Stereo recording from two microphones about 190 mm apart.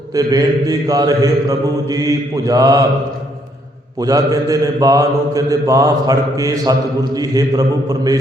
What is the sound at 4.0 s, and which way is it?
Mantra, 20° right (ahead or behind).